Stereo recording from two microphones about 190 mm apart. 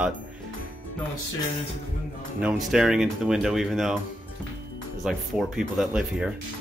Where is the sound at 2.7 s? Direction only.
5° right (ahead or behind).